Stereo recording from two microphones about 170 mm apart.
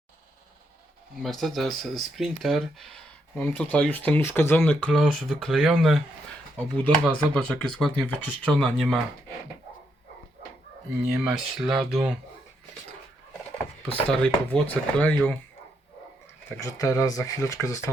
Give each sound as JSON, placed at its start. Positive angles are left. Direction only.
{"t": 1.2, "sound": "speech", "side_deg": 0}
{"t": 11.1, "sound": "speech", "side_deg": -5}
{"t": 14.1, "sound": "speech", "side_deg": 5}
{"t": 16.6, "sound": "speech", "side_deg": 20}